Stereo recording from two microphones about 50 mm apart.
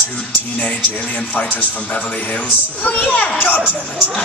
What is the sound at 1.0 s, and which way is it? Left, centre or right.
Speech, left.